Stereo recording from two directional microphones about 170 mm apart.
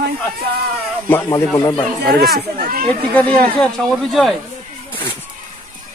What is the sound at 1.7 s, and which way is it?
Speech, 5° left (ahead or behind).